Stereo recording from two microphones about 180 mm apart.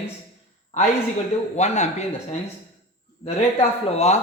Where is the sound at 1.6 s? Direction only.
40° left (ahead or behind).